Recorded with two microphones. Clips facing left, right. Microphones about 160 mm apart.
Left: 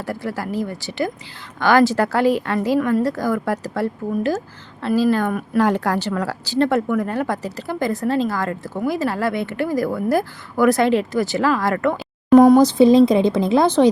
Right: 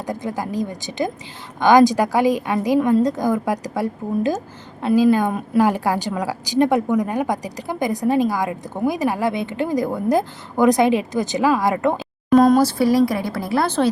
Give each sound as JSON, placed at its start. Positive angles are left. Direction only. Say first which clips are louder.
{"t": 0.0, "sound": "a woman's voice", "louder": "even", "side_deg": -15}
{"t": 12.3, "sound": "speech", "louder": "left 3 dB", "side_deg": 15}